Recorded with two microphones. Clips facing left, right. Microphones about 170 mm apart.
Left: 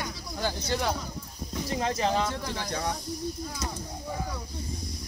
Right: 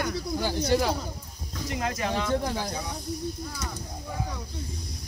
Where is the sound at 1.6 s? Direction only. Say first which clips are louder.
Left 2 dB; 30° left (ahead or behind).